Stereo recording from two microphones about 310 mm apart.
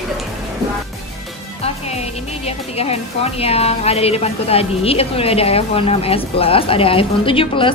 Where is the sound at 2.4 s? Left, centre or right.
Centre.